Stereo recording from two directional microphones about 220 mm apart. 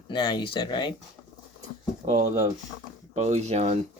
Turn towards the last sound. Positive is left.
turn(degrees=-30)  # may be behind; listen again after turning